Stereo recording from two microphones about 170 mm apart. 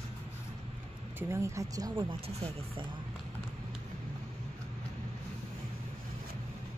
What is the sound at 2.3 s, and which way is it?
Speech, 35° right (ahead or behind).